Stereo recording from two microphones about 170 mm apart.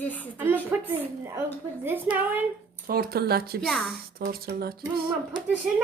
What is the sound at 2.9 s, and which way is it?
Speech, 65° right (ahead or behind).